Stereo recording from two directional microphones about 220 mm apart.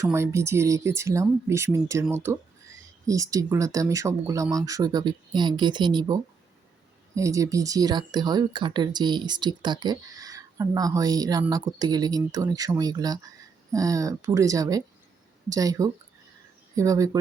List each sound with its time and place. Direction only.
0.0 s speech: 15° right (ahead or behind)
7.2 s speech: 15° right (ahead or behind)